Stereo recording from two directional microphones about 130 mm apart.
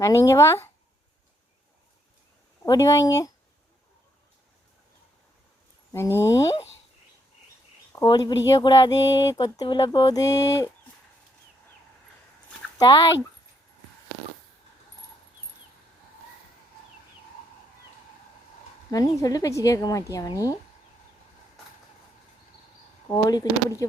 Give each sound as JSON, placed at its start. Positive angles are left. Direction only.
{"t": 0.0, "sound": "a woman's voice", "side_deg": 25}
{"t": 2.6, "sound": "a woman's voice", "side_deg": 25}
{"t": 5.9, "sound": "a woman's voice", "side_deg": 20}
{"t": 8.0, "sound": "a woman's voice", "side_deg": 30}
{"t": 12.8, "sound": "a woman's voice", "side_deg": 25}
{"t": 18.9, "sound": "a woman's voice", "side_deg": 30}
{"t": 23.0, "sound": "a woman's voice", "side_deg": 30}